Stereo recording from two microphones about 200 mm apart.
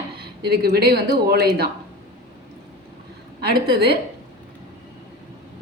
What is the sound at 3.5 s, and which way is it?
Speech, 55° right (ahead or behind).